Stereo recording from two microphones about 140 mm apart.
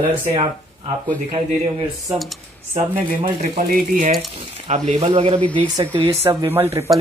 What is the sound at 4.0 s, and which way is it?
Speech, 90° right.